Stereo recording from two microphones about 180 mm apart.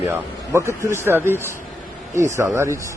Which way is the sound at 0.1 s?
15° right (ahead or behind).